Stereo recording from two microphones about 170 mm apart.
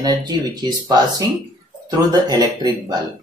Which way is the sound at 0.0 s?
25° right (ahead or behind).